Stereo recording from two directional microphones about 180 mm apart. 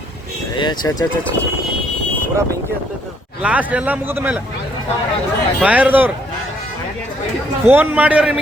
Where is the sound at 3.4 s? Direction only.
10° right (ahead or behind).